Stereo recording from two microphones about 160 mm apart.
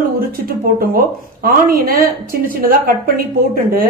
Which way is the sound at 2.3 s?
60° right (ahead or behind).